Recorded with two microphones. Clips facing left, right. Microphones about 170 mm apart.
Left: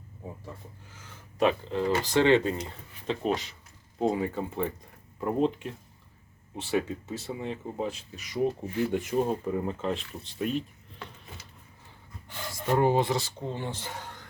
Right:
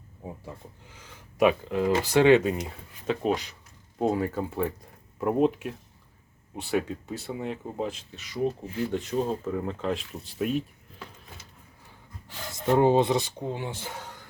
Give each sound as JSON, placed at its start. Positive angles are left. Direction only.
{"t": 1.4, "sound": "speech", "side_deg": -10}
{"t": 8.9, "sound": "speech", "side_deg": 15}
{"t": 12.5, "sound": "speech", "side_deg": -20}